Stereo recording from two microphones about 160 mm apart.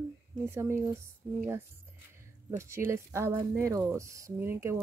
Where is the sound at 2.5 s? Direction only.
15° right (ahead or behind).